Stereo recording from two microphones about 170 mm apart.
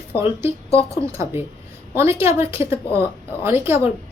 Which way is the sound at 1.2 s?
15° right (ahead or behind).